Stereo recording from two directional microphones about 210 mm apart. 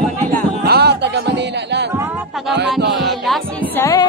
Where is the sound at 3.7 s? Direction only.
15° left (ahead or behind).